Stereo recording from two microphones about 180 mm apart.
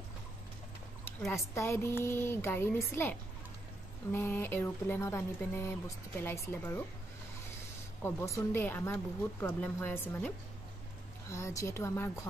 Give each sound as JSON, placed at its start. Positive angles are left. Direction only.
{"t": 1.5, "sound": "speech", "side_deg": 15}
{"t": 8.0, "sound": "speech", "side_deg": 15}